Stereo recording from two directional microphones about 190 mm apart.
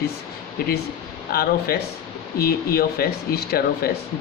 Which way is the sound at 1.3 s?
55° left (ahead or behind).